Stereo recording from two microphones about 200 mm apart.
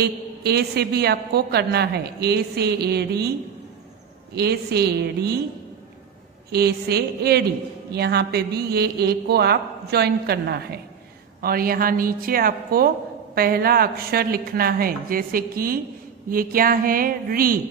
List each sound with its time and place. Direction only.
0.0 s a woman's voice: 50° right (ahead or behind)
4.4 s a woman's voice: 55° right (ahead or behind)
6.5 s a woman's voice: 55° right (ahead or behind)